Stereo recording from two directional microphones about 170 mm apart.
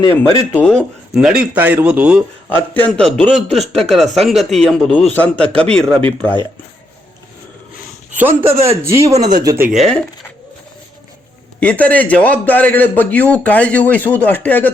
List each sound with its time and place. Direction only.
0.5 s speech: 5° left (ahead or behind)
2.5 s a man's voice: 10° left (ahead or behind)
8.1 s a man's voice: 10° right (ahead or behind)
9.6 s speech: centre (ahead or behind)
11.6 s a man's voice: 10° left (ahead or behind)